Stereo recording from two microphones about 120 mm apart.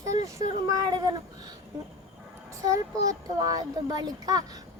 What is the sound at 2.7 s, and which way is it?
Speech, 30° right (ahead or behind).